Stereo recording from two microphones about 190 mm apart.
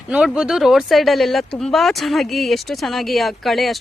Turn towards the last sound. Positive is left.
turn(degrees=0)  # may be behind; listen again after turning